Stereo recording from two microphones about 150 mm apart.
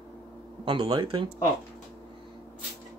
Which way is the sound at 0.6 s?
35° right (ahead or behind).